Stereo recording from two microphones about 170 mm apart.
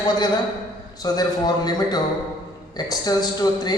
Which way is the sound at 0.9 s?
20° left (ahead or behind).